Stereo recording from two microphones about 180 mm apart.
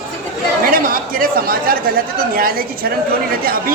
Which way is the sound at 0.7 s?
55° right (ahead or behind).